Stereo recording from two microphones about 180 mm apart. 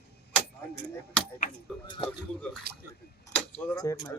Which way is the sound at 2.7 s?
60° right (ahead or behind).